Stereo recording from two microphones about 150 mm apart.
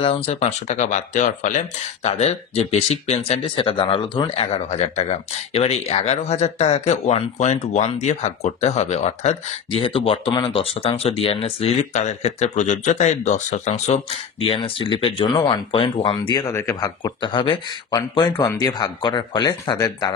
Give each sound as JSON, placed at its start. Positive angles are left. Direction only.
{"t": 0.0, "sound": "speech", "side_deg": 40}
{"t": 2.1, "sound": "speech", "side_deg": 45}
{"t": 17.0, "sound": "speech", "side_deg": 30}